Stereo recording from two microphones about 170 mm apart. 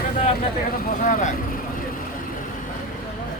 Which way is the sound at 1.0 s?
50° left (ahead or behind).